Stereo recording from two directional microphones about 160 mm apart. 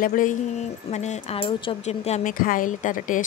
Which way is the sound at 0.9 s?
45° left (ahead or behind).